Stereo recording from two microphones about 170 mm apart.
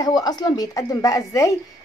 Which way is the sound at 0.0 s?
20° left (ahead or behind).